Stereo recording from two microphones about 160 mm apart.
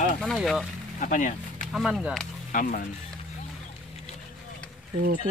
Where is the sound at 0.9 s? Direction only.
50° left (ahead or behind).